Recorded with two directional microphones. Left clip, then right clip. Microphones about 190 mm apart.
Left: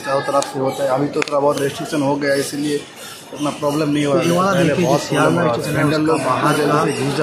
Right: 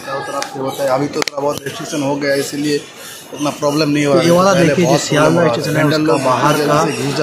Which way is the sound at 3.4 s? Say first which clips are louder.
Right 3 dB; 10° right (ahead or behind).